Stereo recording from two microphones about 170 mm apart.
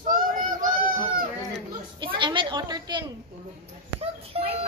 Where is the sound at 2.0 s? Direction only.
30° right (ahead or behind).